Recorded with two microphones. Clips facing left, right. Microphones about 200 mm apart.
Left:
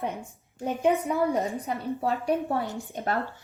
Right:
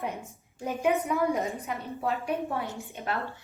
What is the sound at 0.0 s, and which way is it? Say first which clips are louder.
A woman's voice: left 2 dB; 30° left (ahead or behind).